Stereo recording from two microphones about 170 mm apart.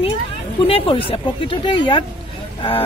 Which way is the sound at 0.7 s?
35° left (ahead or behind).